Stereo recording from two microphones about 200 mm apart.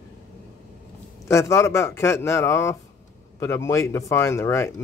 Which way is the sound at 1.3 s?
15° left (ahead or behind).